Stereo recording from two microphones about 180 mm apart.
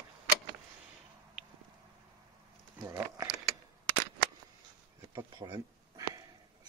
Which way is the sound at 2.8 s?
20° right (ahead or behind).